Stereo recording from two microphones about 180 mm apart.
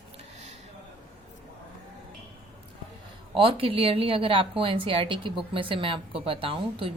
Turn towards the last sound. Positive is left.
turn(degrees=-30)  # may be behind; listen again after turning